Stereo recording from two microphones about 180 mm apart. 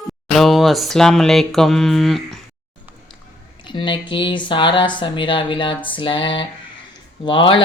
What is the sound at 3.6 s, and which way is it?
Speech, 25° left (ahead or behind).